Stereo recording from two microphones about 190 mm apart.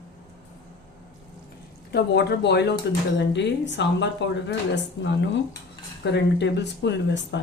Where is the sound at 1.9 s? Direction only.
60° left (ahead or behind).